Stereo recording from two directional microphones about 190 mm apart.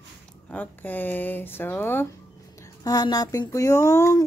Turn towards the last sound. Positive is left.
turn(degrees=15)  # may be behind; listen again after turning